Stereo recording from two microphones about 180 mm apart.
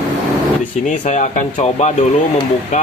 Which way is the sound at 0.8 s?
45° left (ahead or behind).